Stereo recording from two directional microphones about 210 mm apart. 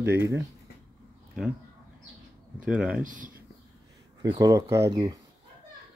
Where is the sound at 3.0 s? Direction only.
40° right (ahead or behind).